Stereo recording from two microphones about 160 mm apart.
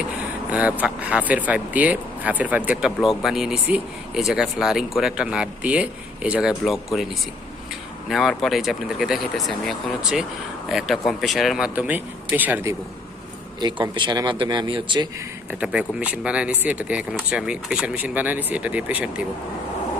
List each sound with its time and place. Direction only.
0.5 s speech: 10° right (ahead or behind)
8.1 s speech: centre (ahead or behind)
13.6 s speech: 30° right (ahead or behind)
15.6 s speech: 5° right (ahead or behind)